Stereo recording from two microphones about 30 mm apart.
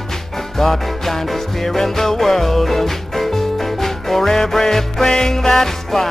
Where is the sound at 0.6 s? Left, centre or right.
Centre.